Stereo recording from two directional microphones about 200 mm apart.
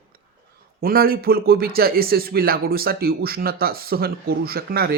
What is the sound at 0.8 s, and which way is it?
Speech, 50° right (ahead or behind).